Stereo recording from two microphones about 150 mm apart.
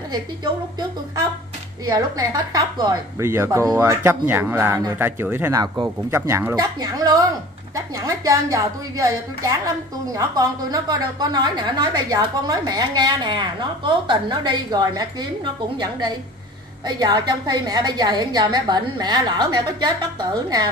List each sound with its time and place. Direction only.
1.9 s a woman's voice: 25° right (ahead or behind)